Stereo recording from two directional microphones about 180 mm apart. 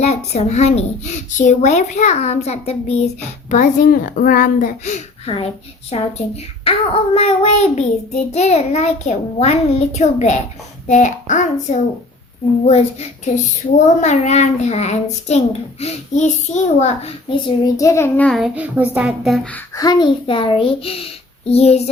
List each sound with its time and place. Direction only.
0.0 s a child's voice: 35° left (ahead or behind)
17.7 s a child's voice: 15° left (ahead or behind)
18.3 s a woman's voice: centre (ahead or behind)
19.8 s a child's voice: 25° left (ahead or behind)